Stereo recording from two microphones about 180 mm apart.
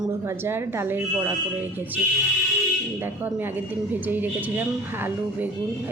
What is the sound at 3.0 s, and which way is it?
Speech, 10° right (ahead or behind).